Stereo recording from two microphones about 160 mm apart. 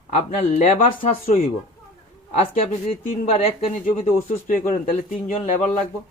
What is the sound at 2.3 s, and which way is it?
Speech, 40° left (ahead or behind).